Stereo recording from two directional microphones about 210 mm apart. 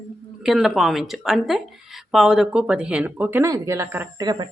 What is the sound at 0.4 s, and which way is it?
A woman's voice, centre (ahead or behind).